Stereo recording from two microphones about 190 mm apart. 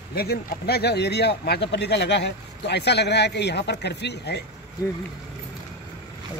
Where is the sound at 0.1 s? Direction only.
55° left (ahead or behind).